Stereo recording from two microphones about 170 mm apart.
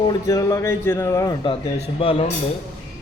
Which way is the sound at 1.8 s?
35° left (ahead or behind).